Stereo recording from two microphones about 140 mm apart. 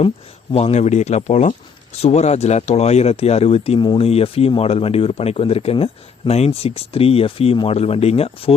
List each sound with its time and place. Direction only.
0.5 s speech: 50° left (ahead or behind)